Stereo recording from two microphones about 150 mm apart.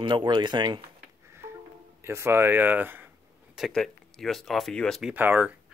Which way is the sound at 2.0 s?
15° right (ahead or behind).